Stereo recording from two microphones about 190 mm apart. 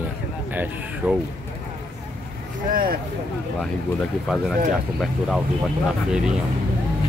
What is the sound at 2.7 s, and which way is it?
Speech, 50° right (ahead or behind).